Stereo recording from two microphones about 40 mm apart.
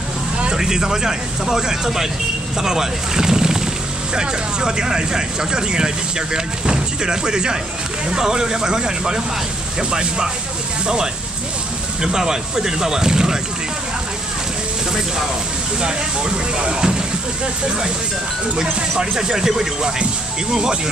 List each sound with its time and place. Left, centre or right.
0.6 s speech: centre
12.0 s speech: centre
16.5 s speech: right
18.6 s speech: centre